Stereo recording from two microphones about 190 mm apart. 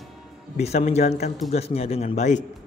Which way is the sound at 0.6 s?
35° left (ahead or behind).